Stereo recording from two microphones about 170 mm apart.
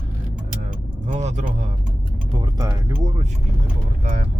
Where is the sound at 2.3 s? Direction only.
25° right (ahead or behind).